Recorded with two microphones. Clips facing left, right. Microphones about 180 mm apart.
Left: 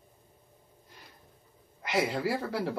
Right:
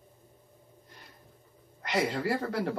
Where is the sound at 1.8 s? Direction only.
5° left (ahead or behind).